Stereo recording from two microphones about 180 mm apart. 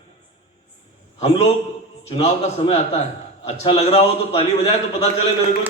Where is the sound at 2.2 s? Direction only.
40° left (ahead or behind).